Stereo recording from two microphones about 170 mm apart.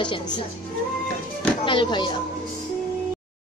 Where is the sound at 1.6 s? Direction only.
30° left (ahead or behind).